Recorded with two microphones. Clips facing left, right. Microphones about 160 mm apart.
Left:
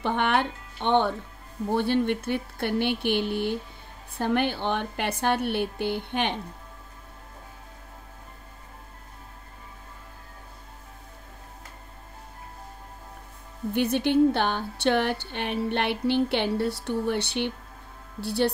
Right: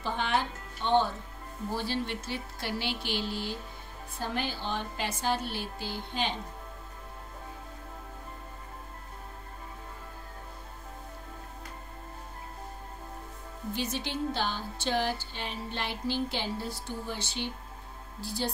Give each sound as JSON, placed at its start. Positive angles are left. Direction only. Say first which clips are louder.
{"t": 0.0, "sound": "a woman's voice", "louder": "left 6 dB", "side_deg": 65}
{"t": 13.7, "sound": "a woman's voice", "louder": "left 13 dB", "side_deg": 60}